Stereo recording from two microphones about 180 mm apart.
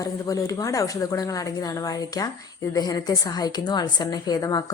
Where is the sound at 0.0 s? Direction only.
20° left (ahead or behind).